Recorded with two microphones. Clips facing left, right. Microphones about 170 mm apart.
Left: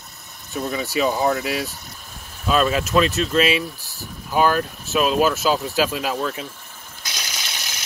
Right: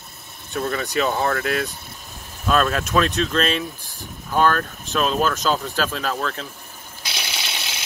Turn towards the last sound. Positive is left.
turn(degrees=-20)  # may be behind; listen again after turning